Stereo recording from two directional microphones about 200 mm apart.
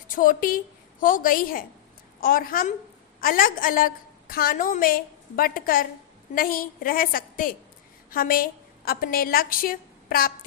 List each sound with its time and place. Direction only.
0.1 s a woman's voice: 45° left (ahead or behind)